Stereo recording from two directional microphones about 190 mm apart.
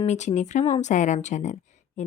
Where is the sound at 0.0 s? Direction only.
35° left (ahead or behind).